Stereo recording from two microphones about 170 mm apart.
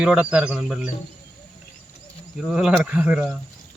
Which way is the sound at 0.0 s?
5° right (ahead or behind).